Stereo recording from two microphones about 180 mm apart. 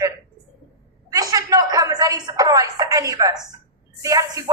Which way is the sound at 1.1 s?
20° right (ahead or behind).